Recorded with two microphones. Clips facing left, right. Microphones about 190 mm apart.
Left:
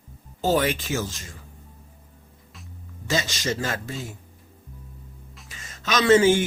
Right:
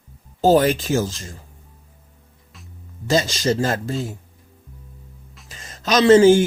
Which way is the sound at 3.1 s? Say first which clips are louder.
Right 7 dB; 35° right (ahead or behind).